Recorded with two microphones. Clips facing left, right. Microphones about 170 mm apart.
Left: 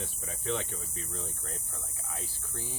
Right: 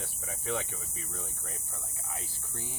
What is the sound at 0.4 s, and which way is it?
Speech, 15° right (ahead or behind).